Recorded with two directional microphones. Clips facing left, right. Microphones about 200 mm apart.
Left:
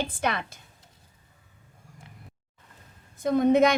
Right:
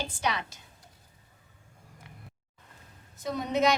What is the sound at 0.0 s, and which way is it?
Speech, 55° left (ahead or behind).